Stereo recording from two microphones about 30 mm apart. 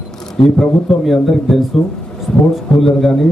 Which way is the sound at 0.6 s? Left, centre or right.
Centre.